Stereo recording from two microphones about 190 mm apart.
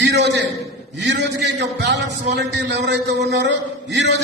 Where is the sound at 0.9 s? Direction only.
65° right (ahead or behind).